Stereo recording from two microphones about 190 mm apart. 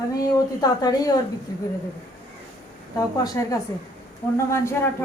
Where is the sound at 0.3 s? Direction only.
20° left (ahead or behind).